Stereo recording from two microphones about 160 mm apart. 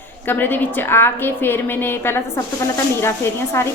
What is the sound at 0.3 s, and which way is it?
A woman's voice, 15° left (ahead or behind).